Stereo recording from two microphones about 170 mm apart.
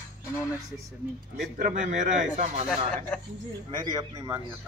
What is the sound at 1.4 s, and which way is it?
Speech, 45° right (ahead or behind).